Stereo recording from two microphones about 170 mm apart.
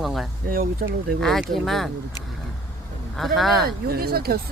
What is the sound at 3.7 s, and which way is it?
Speech, 65° right (ahead or behind).